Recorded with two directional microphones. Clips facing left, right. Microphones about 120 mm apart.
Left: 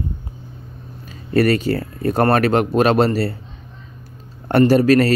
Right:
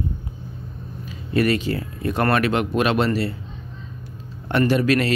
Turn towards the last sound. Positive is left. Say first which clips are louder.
# left 6 dB
turn(degrees=40)  # may be behind; listen again after turning